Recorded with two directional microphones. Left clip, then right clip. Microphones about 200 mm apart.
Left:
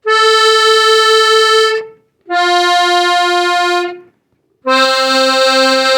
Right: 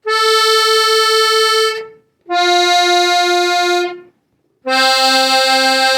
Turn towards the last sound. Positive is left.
turn(degrees=35)  # may be behind; listen again after turning